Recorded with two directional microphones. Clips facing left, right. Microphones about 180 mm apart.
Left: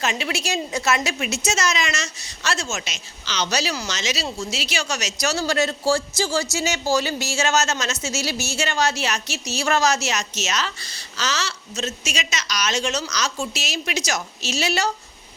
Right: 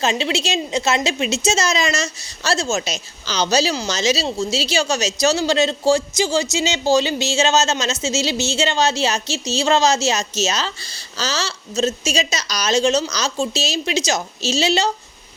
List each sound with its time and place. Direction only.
0.0 s a woman's voice: 25° right (ahead or behind)